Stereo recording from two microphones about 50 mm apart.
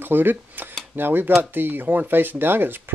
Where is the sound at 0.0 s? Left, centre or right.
Right.